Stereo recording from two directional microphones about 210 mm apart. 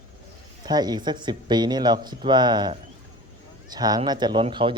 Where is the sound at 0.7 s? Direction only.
20° right (ahead or behind).